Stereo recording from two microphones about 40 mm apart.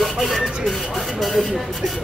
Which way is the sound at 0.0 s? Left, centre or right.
Centre.